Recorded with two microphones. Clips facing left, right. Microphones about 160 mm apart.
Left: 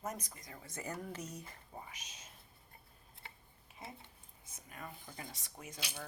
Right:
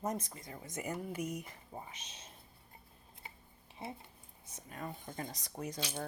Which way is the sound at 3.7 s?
30° right (ahead or behind).